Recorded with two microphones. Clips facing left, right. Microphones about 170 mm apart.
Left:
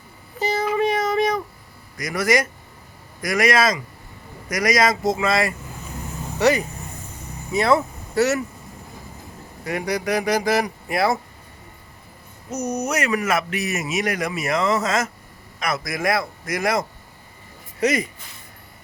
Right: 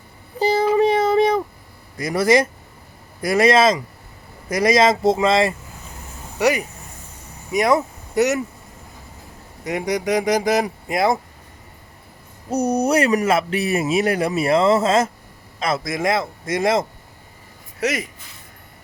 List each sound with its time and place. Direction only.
0.3 s child singing: 30° right (ahead or behind)
2.0 s speech: 30° right (ahead or behind)
6.4 s speech: 10° right (ahead or behind)
9.6 s speech: 20° right (ahead or behind)
12.5 s a man's voice: 30° right (ahead or behind)
17.7 s speech: centre (ahead or behind)